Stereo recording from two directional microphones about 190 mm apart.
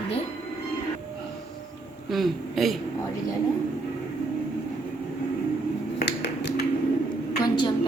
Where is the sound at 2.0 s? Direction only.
Centre (ahead or behind).